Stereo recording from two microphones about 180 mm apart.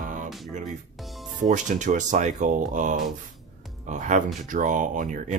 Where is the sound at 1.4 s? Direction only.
45° right (ahead or behind).